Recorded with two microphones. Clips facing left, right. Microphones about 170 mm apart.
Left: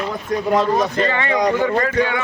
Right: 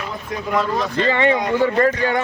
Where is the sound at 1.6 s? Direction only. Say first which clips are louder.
Right 1 dB; 40° right (ahead or behind).